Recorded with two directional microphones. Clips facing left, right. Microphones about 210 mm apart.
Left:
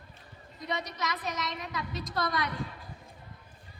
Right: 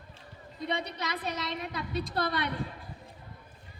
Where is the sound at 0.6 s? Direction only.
30° right (ahead or behind).